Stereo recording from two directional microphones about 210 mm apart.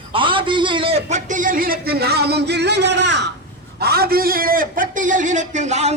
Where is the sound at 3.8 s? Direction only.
50° right (ahead or behind).